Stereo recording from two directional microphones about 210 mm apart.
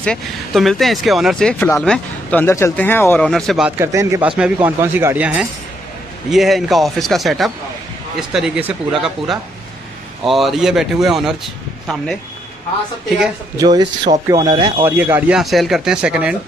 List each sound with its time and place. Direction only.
0.0 s speech: centre (ahead or behind)
13.6 s speech: 20° right (ahead or behind)
14.9 s speech: 10° right (ahead or behind)